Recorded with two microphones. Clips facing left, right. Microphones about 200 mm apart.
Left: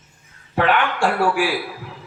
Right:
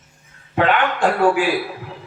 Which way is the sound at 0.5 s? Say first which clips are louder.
Right 1 dB; 20° right (ahead or behind).